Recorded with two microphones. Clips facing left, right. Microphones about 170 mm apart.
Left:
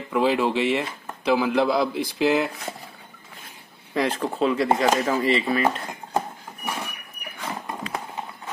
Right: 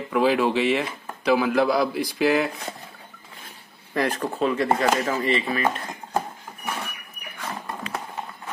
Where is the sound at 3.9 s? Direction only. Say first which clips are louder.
Left 1 dB; 25° left (ahead or behind).